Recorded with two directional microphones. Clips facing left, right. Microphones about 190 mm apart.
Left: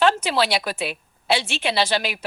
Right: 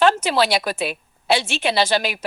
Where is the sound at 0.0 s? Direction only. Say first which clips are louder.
Right 2 dB; 45° right (ahead or behind).